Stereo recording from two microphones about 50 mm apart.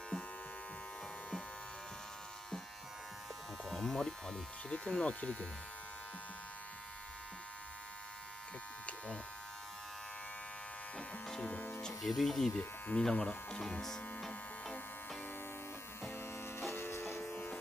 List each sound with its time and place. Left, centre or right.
3.6 s a sound: centre
4.6 s speech: left
8.8 s electric shaver: left
11.4 s music: left
12.0 s speech: centre
12.5 s speech: left
16.2 s music: left
17.3 s music: left